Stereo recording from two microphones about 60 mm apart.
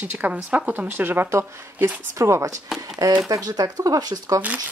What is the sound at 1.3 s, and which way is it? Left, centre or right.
Speech, right.